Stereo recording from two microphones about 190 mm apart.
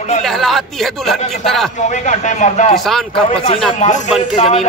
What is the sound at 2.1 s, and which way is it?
Speech, 40° left (ahead or behind).